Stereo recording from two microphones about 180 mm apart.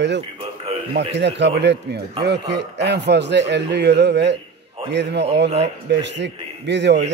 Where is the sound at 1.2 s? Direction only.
75° right (ahead or behind).